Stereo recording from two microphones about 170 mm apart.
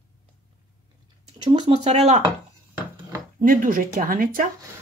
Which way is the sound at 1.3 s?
25° right (ahead or behind).